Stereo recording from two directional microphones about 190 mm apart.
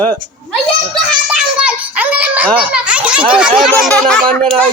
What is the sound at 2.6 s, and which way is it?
A child's voice, 5° right (ahead or behind).